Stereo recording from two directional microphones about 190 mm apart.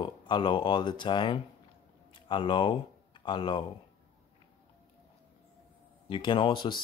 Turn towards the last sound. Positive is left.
turn(degrees=25)  # may be behind; listen again after turning